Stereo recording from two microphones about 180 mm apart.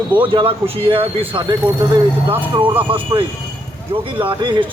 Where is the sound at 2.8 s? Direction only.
30° right (ahead or behind).